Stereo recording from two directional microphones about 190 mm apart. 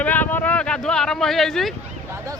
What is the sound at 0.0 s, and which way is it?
Vehicle, 10° left (ahead or behind).